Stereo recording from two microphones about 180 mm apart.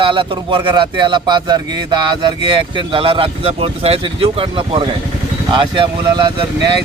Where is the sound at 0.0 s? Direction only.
25° right (ahead or behind).